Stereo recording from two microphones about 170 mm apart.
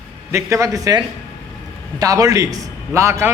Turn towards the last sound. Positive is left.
turn(degrees=-15)  # may be behind; listen again after turning